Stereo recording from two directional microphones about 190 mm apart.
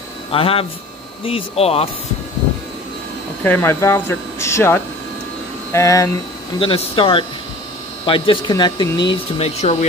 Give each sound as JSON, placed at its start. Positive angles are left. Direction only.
{"t": 0.3, "sound": "speech", "side_deg": 30}
{"t": 3.4, "sound": "speech", "side_deg": 10}
{"t": 6.6, "sound": "speech", "side_deg": 30}
{"t": 9.1, "sound": "speech", "side_deg": 35}